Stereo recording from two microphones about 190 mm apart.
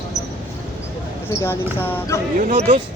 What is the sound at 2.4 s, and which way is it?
Speech, 40° right (ahead or behind).